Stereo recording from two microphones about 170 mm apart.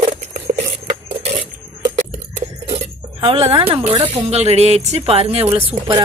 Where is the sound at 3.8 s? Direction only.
30° right (ahead or behind).